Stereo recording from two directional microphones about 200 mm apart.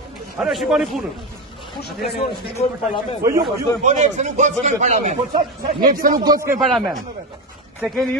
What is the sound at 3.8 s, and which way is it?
A man's voice, 35° right (ahead or behind).